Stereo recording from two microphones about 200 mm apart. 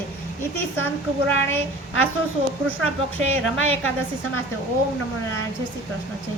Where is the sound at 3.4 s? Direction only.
90° left.